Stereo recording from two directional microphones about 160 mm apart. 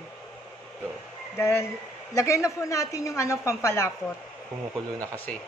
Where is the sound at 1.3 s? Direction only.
15° left (ahead or behind).